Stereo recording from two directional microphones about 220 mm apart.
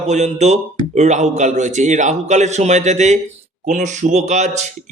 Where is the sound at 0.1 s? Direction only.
30° right (ahead or behind).